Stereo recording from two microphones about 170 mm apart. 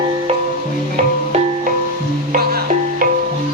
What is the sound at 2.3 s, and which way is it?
Music, 60° right (ahead or behind).